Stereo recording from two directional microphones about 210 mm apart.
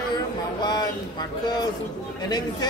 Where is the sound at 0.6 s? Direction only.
20° left (ahead or behind).